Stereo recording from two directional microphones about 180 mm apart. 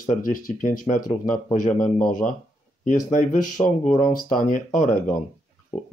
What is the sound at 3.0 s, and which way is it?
Speech, 45° left (ahead or behind).